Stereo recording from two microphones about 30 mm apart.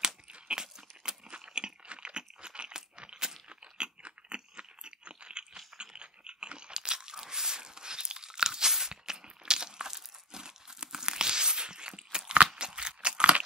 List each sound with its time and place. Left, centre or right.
0.3 s crunch: right
1.2 s a sound: right
3.4 s crunch: right